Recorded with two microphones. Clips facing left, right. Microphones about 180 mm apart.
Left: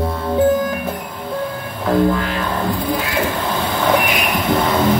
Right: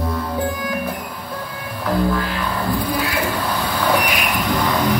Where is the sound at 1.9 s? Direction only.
20° left (ahead or behind).